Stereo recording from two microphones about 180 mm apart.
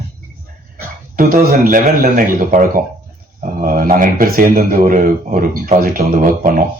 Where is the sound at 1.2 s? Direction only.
50° right (ahead or behind).